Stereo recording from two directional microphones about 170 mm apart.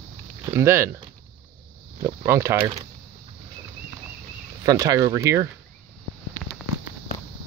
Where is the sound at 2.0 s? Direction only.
15° right (ahead or behind).